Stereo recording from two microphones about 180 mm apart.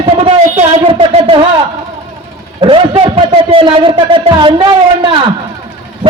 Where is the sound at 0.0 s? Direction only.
30° right (ahead or behind).